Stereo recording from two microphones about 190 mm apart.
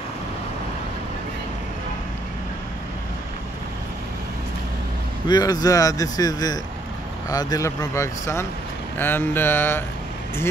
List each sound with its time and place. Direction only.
5.3 s speech: 20° left (ahead or behind)